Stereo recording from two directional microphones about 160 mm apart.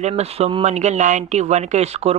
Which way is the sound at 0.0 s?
40° right (ahead or behind).